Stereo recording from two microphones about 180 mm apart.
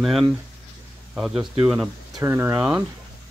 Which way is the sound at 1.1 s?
Centre (ahead or behind).